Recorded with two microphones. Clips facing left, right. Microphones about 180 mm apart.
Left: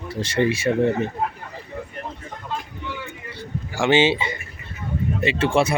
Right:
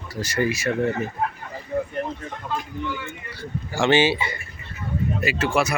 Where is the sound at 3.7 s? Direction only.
15° left (ahead or behind).